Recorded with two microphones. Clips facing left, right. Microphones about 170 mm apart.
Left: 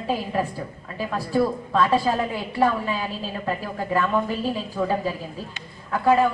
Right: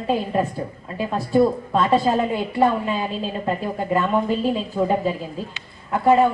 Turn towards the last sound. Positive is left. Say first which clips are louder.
# right 3 dB
turn(degrees=-20)  # may be behind; listen again after turning